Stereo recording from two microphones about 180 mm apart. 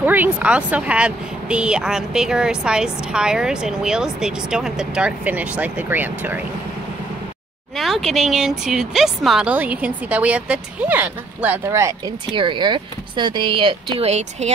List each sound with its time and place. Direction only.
0.0 s speech: 10° right (ahead or behind)
7.7 s speech: centre (ahead or behind)
12.4 s speech: 25° right (ahead or behind)